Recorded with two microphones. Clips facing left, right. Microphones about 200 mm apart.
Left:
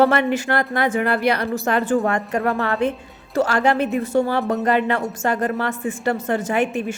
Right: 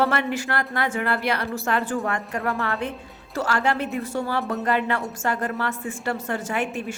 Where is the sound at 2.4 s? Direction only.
40° left (ahead or behind).